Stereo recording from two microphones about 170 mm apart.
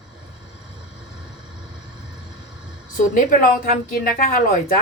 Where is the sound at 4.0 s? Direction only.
55° left (ahead or behind).